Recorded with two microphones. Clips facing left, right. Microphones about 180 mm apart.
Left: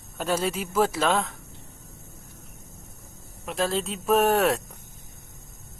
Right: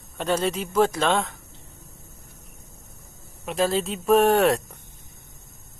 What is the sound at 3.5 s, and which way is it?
Speech, centre (ahead or behind).